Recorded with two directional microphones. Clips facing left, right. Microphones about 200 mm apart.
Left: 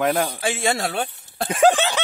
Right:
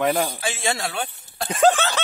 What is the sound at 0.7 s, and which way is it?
Speech, 45° left (ahead or behind).